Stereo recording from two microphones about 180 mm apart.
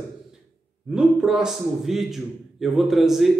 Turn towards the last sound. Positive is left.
turn(degrees=0)  # may be behind; listen again after turning